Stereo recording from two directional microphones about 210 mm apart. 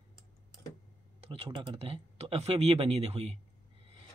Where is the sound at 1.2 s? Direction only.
25° right (ahead or behind).